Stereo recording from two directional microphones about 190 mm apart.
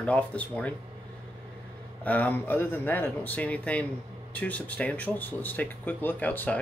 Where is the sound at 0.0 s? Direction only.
5° left (ahead or behind).